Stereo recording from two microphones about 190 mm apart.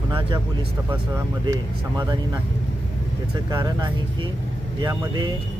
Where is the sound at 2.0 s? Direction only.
20° right (ahead or behind).